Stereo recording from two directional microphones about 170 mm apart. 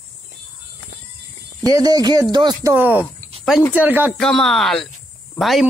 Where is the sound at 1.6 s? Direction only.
20° right (ahead or behind).